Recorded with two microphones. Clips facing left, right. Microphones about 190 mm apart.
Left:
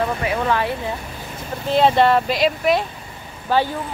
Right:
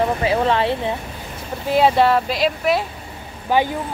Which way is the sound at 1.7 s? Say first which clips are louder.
Even; 5° right (ahead or behind).